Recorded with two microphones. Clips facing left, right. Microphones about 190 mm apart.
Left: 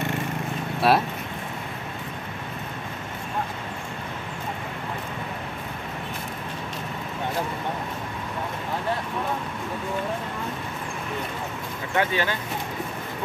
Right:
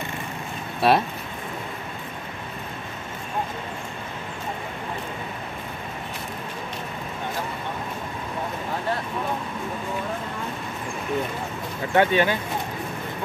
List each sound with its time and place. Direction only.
0.8 s speech: centre (ahead or behind)
11.9 s speech: 25° right (ahead or behind)